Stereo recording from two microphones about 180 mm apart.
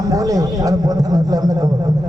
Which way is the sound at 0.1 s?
20° right (ahead or behind).